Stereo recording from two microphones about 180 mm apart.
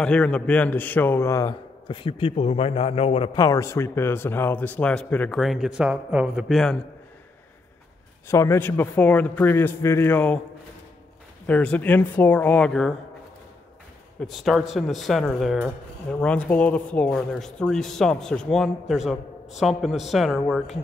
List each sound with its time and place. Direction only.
0.0 s a man's voice: 5° left (ahead or behind); by 3.3 s 35° left (ahead or behind)
3.3 s speech: 20° left (ahead or behind); by 6.8 s centre (ahead or behind)
8.3 s speech: 15° left (ahead or behind)
11.4 s speech: 5° left (ahead or behind)
14.2 s speech: centre (ahead or behind)